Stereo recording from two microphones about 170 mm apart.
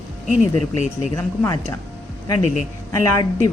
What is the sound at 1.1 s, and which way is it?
Speech, 15° left (ahead or behind).